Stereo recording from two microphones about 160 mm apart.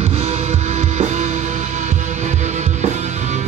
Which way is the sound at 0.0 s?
40° right (ahead or behind).